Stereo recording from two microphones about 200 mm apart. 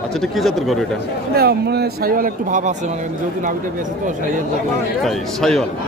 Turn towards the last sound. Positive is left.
turn(degrees=0)  # may be behind; listen again after turning